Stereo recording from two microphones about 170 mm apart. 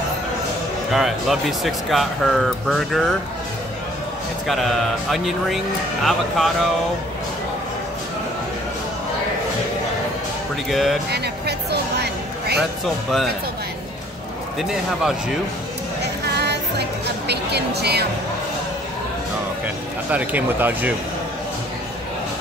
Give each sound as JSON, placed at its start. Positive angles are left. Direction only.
{"t": 0.9, "sound": "speech", "side_deg": 0}
{"t": 4.5, "sound": "speech", "side_deg": 0}
{"t": 10.7, "sound": "speech", "side_deg": 0}
{"t": 11.1, "sound": "music", "side_deg": -70}
{"t": 12.5, "sound": "speech", "side_deg": 0}
{"t": 14.6, "sound": "speech", "side_deg": 0}
{"t": 16.0, "sound": "music", "side_deg": -75}
{"t": 17.3, "sound": "speech", "side_deg": -75}
{"t": 20.1, "sound": "speech", "side_deg": -10}